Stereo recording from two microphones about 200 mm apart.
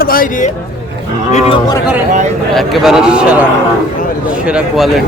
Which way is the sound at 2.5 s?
Centre (ahead or behind).